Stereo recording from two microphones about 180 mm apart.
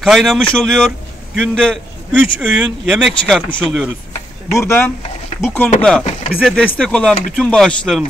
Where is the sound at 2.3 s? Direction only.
5° right (ahead or behind).